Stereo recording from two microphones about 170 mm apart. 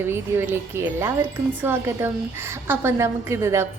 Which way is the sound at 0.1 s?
15° right (ahead or behind).